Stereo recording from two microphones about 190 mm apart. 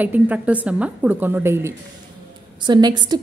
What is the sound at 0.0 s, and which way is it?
A woman's voice, 10° right (ahead or behind).